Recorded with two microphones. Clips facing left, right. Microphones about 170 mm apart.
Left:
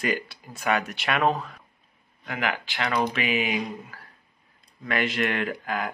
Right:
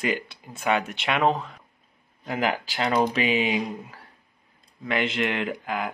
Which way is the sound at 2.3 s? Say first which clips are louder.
Right 3 dB; 35° right (ahead or behind).